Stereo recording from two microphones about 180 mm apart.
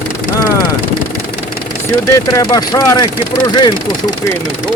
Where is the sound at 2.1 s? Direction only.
20° left (ahead or behind).